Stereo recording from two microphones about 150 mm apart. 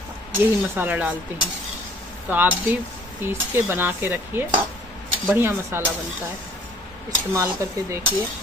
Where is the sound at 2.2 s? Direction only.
10° right (ahead or behind).